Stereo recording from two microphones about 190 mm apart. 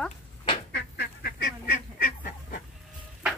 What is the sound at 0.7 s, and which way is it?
Duck, 55° left (ahead or behind).